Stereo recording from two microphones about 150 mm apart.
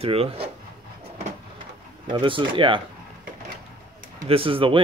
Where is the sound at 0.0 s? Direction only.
40° right (ahead or behind).